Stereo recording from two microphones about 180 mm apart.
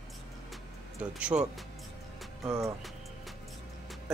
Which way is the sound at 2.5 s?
15° right (ahead or behind).